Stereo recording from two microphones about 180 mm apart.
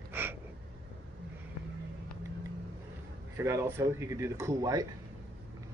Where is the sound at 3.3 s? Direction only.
15° right (ahead or behind).